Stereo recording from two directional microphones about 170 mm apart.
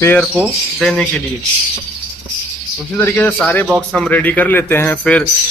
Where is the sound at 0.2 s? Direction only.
5° right (ahead or behind).